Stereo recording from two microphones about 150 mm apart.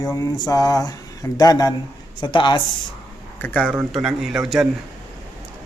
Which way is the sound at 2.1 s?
30° left (ahead or behind).